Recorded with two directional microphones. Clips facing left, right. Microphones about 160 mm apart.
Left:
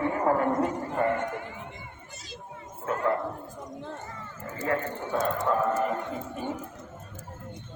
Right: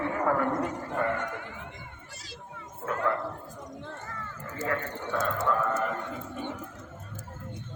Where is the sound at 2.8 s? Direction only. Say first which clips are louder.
Left 2 dB; 30° left (ahead or behind).